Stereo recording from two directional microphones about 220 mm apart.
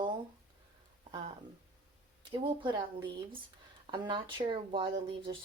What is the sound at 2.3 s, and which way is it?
Speech, 20° right (ahead or behind).